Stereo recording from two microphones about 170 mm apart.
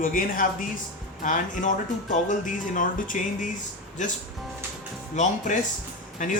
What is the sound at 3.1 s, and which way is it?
Speech, 45° left (ahead or behind).